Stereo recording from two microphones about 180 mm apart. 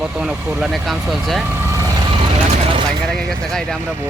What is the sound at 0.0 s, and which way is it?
Speech, 5° right (ahead or behind).